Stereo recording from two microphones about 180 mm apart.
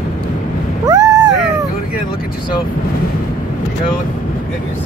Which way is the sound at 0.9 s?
20° right (ahead or behind).